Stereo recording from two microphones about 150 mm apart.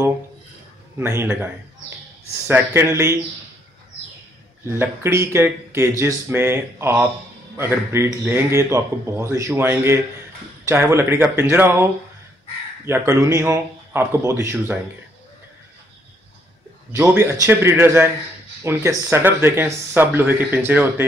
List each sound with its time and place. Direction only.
0.9 s a man's voice: 15° right (ahead or behind)
4.7 s a man's voice: 15° right (ahead or behind)
16.9 s a man's voice: 20° right (ahead or behind)